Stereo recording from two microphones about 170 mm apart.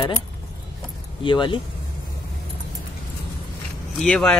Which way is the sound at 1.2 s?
30° left (ahead or behind).